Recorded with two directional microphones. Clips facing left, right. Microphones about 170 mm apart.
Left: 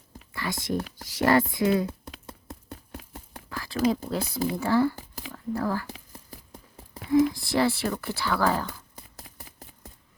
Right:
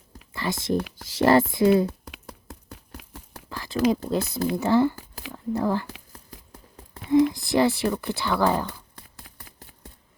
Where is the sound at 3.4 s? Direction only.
20° right (ahead or behind).